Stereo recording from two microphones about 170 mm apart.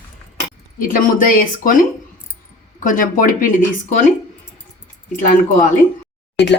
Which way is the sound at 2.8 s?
50° left (ahead or behind).